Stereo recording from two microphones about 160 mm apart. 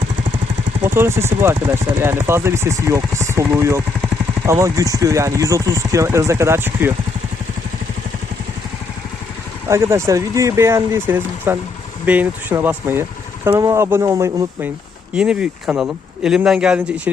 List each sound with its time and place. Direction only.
0.9 s speech: 15° right (ahead or behind)
9.6 s speech: 15° right (ahead or behind)
15.1 s speech: 5° right (ahead or behind)